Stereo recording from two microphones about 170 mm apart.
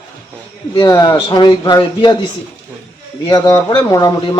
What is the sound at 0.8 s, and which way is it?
Speech, 20° left (ahead or behind).